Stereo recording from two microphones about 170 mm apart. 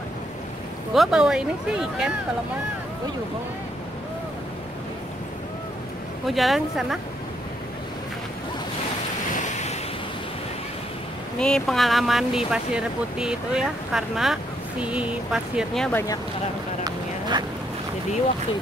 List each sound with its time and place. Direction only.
0.9 s speech: centre (ahead or behind)
6.2 s speech: centre (ahead or behind)
11.3 s speech: 5° left (ahead or behind)
16.8 s a sound: 25° right (ahead or behind)